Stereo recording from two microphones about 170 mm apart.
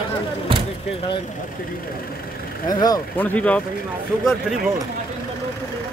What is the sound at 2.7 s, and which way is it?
Speech, 25° left (ahead or behind).